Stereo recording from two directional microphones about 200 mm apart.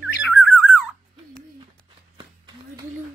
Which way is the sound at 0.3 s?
5° right (ahead or behind).